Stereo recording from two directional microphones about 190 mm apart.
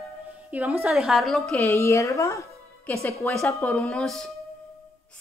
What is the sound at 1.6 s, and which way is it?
Speech, 15° left (ahead or behind).